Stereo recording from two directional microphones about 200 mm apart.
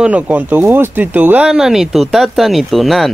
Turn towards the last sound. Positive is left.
turn(degrees=0)  # may be behind; listen again after turning